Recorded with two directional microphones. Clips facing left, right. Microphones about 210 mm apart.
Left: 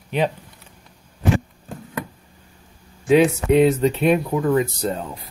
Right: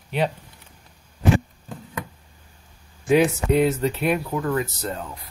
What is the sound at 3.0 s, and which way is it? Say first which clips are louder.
Speech: left 3 dB; 20° left (ahead or behind).